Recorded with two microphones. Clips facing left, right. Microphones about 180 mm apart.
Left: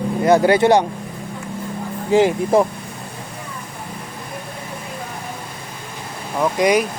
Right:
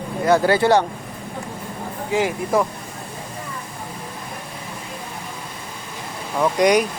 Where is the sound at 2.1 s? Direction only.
30° left (ahead or behind).